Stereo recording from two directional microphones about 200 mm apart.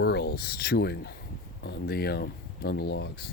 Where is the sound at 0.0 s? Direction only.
55° left (ahead or behind).